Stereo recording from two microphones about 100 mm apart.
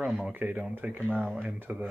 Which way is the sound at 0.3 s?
15° right (ahead or behind).